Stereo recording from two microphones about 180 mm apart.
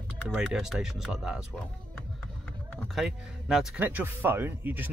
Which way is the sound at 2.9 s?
Centre (ahead or behind).